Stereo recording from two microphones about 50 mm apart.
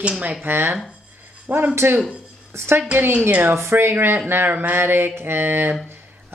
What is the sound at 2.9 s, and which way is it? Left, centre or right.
Speech, right.